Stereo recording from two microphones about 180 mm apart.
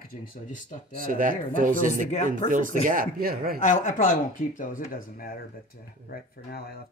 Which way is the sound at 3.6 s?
45° left (ahead or behind).